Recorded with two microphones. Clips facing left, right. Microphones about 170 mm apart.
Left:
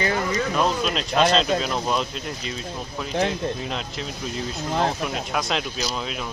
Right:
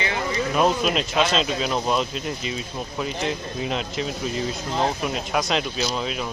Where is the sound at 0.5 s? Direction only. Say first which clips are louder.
Right 5 dB; 5° right (ahead or behind).